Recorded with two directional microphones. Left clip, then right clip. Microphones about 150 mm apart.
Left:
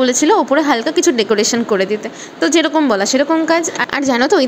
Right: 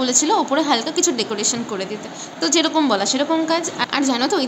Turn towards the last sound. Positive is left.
turn(degrees=45)  # may be behind; listen again after turning